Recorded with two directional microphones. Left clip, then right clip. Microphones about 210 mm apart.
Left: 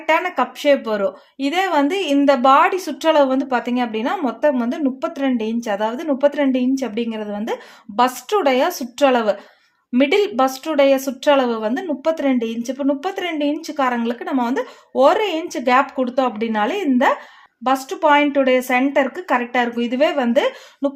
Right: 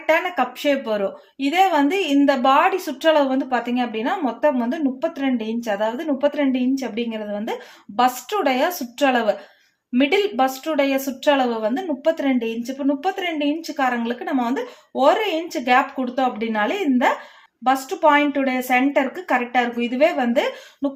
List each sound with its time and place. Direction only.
0.0 s a woman's voice: 45° left (ahead or behind)